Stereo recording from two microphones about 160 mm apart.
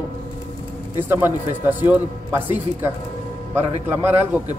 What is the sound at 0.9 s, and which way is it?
A man's voice, 15° right (ahead or behind).